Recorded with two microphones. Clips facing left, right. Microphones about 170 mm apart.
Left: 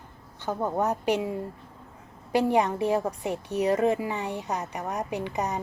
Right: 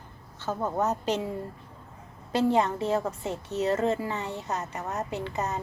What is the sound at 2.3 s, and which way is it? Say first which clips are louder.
Speech: left 1 dB; 15° left (ahead or behind).